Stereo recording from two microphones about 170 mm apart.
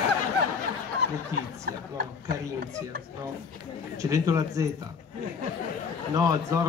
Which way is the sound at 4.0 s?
20° right (ahead or behind).